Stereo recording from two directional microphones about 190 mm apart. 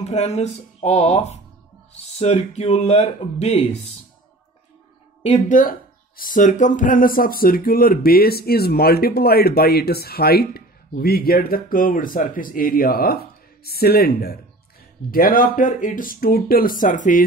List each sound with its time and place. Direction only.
0.0 s speech: 35° left (ahead or behind)
5.2 s speech: 40° left (ahead or behind)